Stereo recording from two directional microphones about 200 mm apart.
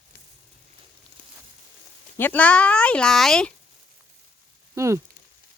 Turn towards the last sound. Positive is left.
turn(degrees=-15)  # may be behind; listen again after turning